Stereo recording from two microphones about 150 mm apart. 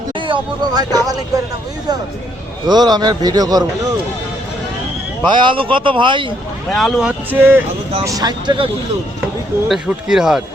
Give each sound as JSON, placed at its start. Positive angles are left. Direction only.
{"t": 0.3, "sound": "a man's voice", "side_deg": -25}
{"t": 2.6, "sound": "a man's voice", "side_deg": -25}
{"t": 5.3, "sound": "speech", "side_deg": -35}
{"t": 6.7, "sound": "speech", "side_deg": 0}
{"t": 7.3, "sound": "speech", "side_deg": -15}
{"t": 8.0, "sound": "a man's voice", "side_deg": -25}
{"t": 9.6, "sound": "speech", "side_deg": -5}